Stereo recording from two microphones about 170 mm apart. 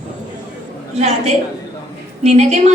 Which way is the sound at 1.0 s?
40° right (ahead or behind).